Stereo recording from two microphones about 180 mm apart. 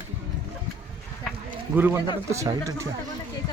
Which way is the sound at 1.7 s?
10° right (ahead or behind).